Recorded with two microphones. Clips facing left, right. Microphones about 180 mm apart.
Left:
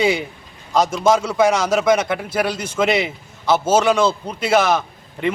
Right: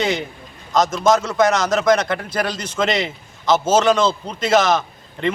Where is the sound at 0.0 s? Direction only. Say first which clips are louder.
Left 3 dB; 10° left (ahead or behind).